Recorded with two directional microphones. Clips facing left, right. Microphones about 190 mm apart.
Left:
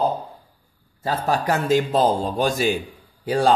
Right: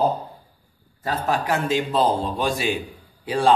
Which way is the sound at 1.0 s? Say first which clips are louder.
Left 2 dB; 35° left (ahead or behind).